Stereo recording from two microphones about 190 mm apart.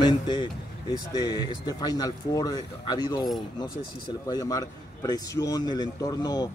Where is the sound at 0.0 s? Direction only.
25° left (ahead or behind).